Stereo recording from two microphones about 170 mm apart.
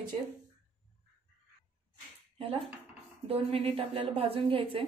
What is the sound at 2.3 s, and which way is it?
A woman's voice, 35° right (ahead or behind).